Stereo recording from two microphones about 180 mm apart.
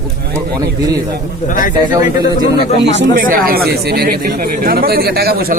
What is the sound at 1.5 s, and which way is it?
Speech, 50° left (ahead or behind).